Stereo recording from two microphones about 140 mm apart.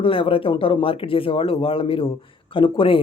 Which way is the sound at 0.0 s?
40° left (ahead or behind).